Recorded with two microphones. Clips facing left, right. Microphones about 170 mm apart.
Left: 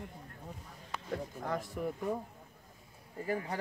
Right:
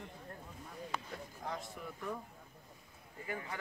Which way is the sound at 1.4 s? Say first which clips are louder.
Left 6 dB; 50° left (ahead or behind).